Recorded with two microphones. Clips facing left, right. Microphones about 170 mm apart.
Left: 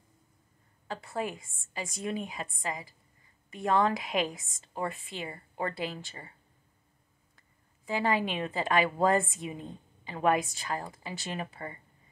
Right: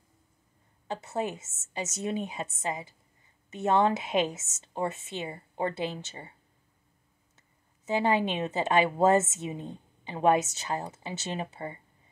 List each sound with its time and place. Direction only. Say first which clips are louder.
1.0 s a woman's voice: right 2 dB; 25° right (ahead or behind)
7.8 s a woman's voice: right 3 dB; 25° right (ahead or behind)